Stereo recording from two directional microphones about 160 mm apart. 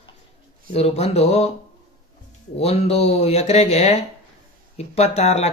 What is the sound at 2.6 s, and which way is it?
Speech, 40° left (ahead or behind).